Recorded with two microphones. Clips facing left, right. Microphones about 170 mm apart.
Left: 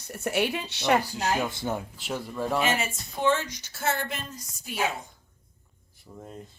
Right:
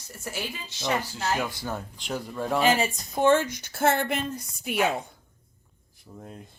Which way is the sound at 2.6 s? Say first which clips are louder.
Right 5 dB; 35° right (ahead or behind).